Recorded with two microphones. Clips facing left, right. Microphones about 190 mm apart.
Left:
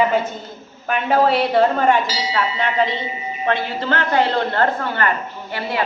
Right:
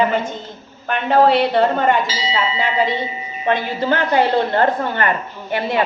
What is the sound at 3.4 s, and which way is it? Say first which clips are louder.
A man's voice: right 3 dB; 15° right (ahead or behind).